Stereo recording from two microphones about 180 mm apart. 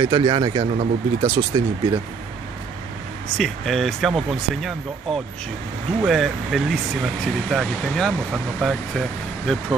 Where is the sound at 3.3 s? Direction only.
Centre (ahead or behind).